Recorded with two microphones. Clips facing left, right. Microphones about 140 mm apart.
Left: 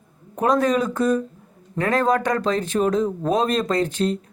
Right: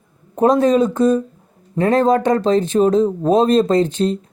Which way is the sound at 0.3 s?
25° right (ahead or behind).